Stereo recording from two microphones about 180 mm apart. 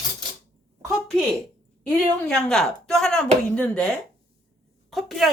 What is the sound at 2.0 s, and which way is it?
Speech, 5° left (ahead or behind).